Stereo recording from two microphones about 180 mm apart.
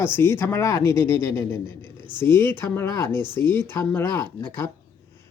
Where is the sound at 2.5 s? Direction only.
15° left (ahead or behind).